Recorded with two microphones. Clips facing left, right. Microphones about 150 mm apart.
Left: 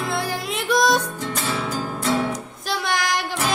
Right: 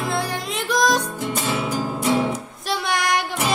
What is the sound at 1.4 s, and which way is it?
Music, 15° right (ahead or behind).